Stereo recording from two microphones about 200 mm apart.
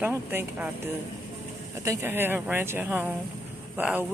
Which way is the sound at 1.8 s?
15° right (ahead or behind).